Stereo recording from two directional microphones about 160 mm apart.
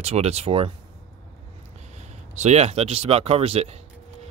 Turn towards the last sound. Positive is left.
turn(degrees=-40)  # may be behind; listen again after turning